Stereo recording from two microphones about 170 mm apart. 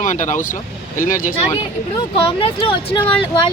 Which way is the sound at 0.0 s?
45° left (ahead or behind).